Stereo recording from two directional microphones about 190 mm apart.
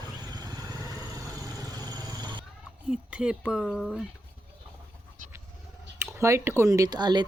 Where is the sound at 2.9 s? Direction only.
5° right (ahead or behind).